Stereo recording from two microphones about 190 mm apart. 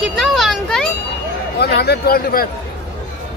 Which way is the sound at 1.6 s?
60° left (ahead or behind).